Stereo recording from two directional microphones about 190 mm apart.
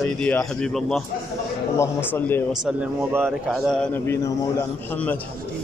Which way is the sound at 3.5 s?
5° left (ahead or behind).